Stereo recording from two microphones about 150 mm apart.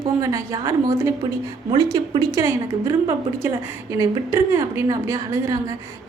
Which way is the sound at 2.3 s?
20° right (ahead or behind).